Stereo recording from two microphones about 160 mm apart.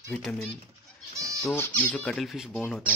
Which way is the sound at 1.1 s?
20° right (ahead or behind).